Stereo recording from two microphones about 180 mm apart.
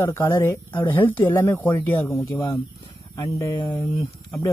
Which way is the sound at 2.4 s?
30° left (ahead or behind).